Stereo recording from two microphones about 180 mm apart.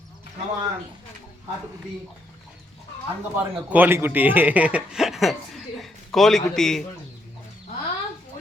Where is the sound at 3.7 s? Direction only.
10° right (ahead or behind).